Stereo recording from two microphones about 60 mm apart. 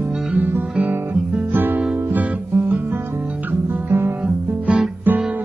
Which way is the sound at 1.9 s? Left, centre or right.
Right.